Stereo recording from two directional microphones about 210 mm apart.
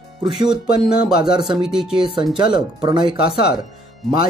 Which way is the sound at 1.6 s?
5° right (ahead or behind).